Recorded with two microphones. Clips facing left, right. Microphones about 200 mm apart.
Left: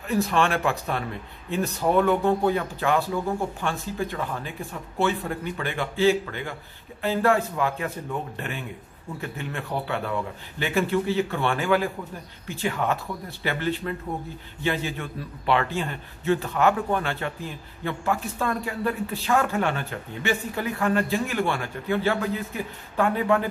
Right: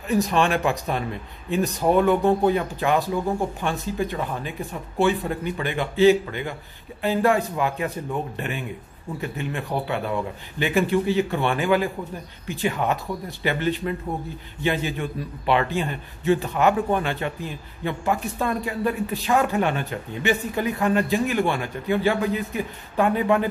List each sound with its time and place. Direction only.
0.1 s a man's voice: 15° right (ahead or behind)